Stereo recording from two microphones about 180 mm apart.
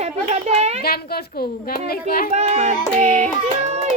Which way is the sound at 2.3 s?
35° right (ahead or behind).